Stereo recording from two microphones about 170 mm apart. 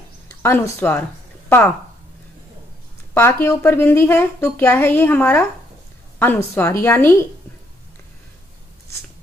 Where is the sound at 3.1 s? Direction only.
15° left (ahead or behind).